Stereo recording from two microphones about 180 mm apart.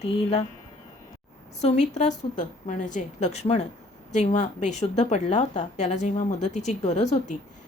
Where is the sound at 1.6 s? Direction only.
40° left (ahead or behind).